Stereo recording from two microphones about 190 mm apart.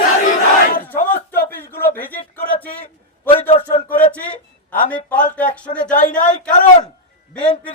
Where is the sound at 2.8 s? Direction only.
30° left (ahead or behind).